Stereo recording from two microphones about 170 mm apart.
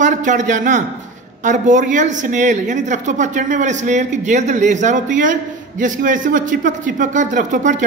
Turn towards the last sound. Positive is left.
turn(degrees=-50)  # may be behind; listen again after turning